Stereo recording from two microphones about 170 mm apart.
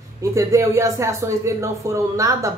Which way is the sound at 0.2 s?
15° right (ahead or behind).